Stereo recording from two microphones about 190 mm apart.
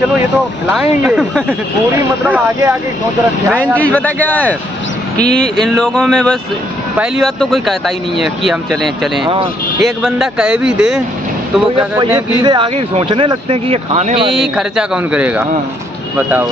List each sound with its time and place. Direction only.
0.7 s speech: 5° right (ahead or behind)
3.7 s a man's voice: 5° left (ahead or behind)
9.2 s speech: 25° right (ahead or behind)
9.8 s speech: centre (ahead or behind)
12.4 s speech: 25° right (ahead or behind)
14.4 s speech: 5° right (ahead or behind)